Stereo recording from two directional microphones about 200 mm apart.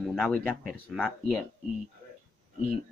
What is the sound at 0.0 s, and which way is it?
Speech, centre (ahead or behind).